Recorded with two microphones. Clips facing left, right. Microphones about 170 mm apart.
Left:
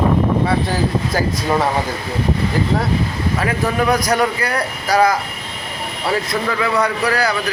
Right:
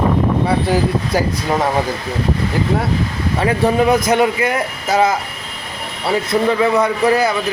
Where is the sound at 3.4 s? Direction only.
25° right (ahead or behind).